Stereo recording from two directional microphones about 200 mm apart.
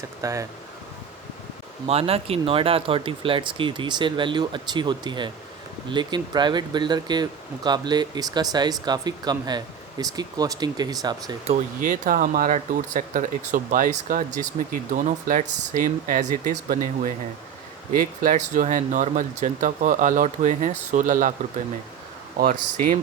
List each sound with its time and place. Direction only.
0.2 s speech: 15° right (ahead or behind)
1.9 s speech: 30° right (ahead or behind)
11.4 s speech: 40° right (ahead or behind)